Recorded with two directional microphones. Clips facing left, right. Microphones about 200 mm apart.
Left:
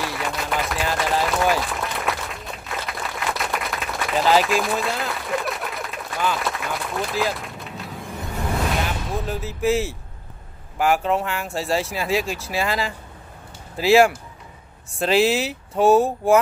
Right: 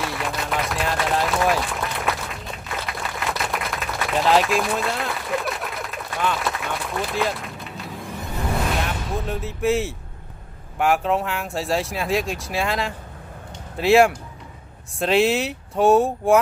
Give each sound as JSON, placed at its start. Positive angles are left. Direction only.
{"t": 0.0, "sound": "run", "side_deg": 0}
{"t": 2.9, "sound": "a sound", "side_deg": 0}
{"t": 8.8, "sound": "speech", "side_deg": 0}